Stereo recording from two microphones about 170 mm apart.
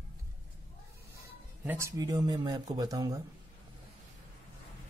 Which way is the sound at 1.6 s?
15° right (ahead or behind).